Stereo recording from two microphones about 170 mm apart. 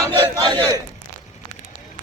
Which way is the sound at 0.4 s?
25° right (ahead or behind).